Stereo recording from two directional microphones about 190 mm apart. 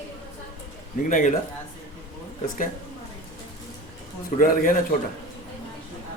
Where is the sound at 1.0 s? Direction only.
45° left (ahead or behind).